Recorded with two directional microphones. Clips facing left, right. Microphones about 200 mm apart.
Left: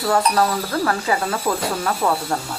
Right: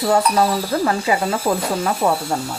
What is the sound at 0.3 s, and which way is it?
Speech, 15° right (ahead or behind).